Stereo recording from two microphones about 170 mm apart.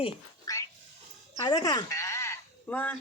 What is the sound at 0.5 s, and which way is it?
Dog, 20° left (ahead or behind).